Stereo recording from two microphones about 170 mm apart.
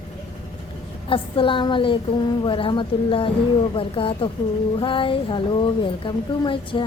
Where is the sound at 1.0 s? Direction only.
30° left (ahead or behind).